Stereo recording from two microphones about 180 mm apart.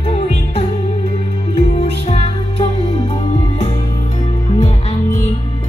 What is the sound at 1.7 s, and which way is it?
Music, 30° left (ahead or behind).